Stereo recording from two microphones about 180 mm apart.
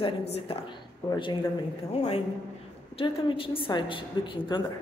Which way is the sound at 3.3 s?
30° left (ahead or behind).